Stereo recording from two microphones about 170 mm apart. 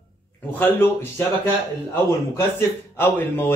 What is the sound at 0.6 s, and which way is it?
Speech, 10° left (ahead or behind).